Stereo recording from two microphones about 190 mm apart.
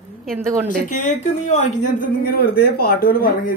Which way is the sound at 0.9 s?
40° left (ahead or behind).